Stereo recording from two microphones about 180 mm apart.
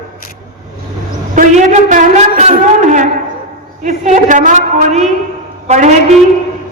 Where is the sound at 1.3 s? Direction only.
45° right (ahead or behind).